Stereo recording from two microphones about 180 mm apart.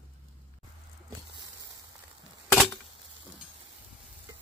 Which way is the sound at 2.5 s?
5° left (ahead or behind).